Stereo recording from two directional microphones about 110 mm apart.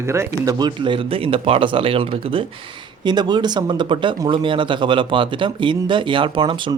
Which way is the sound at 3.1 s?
40° right (ahead or behind).